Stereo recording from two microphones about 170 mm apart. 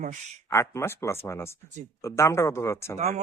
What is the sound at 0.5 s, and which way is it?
Speech, 15° left (ahead or behind).